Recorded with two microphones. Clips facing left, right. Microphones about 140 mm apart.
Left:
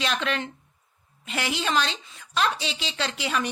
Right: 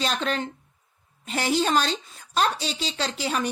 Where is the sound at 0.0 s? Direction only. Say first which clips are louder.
Right 1 dB; 35° right (ahead or behind).